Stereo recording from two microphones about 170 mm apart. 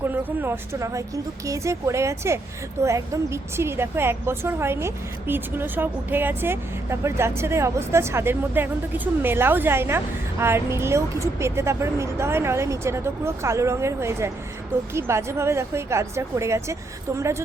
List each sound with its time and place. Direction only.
0.0 s a woman's voice: 10° right (ahead or behind)